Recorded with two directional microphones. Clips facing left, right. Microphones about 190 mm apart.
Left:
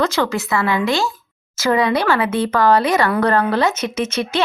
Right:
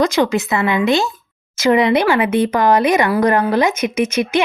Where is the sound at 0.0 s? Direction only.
15° right (ahead or behind).